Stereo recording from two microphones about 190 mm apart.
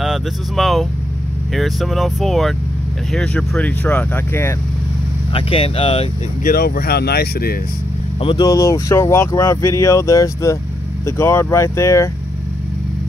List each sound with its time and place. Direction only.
0.0 s speech: centre (ahead or behind)
5.3 s speech: 30° left (ahead or behind)
6.4 s speech: 50° left (ahead or behind)
8.2 s speech: 25° left (ahead or behind)